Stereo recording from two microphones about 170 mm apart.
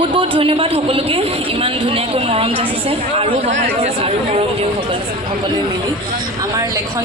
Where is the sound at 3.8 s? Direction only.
35° right (ahead or behind).